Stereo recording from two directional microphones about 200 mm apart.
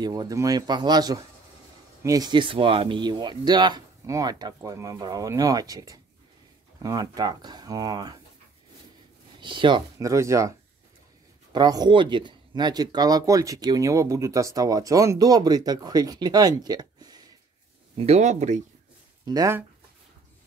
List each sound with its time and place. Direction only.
0.0 s speech: 20° right (ahead or behind)
9.4 s speech: 25° right (ahead or behind)
11.5 s speech: 20° right (ahead or behind)
17.9 s speech: 30° right (ahead or behind)
19.2 s speech: 15° right (ahead or behind)